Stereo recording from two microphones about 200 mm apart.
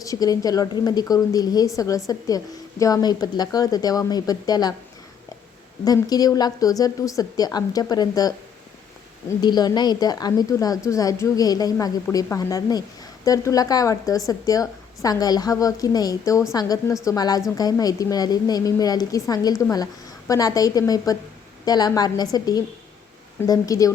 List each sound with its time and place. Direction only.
0.0 s a woman's voice: 20° left (ahead or behind)
5.8 s a woman's voice: 20° left (ahead or behind)
9.4 s a woman's voice: 20° left (ahead or behind)